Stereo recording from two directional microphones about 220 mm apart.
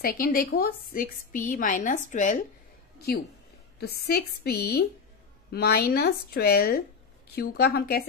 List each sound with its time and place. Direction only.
0.0 s a woman's voice: 40° left (ahead or behind)
3.8 s speech: 45° left (ahead or behind)